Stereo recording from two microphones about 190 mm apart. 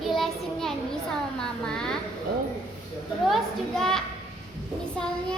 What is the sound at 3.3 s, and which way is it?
A child's voice, centre (ahead or behind).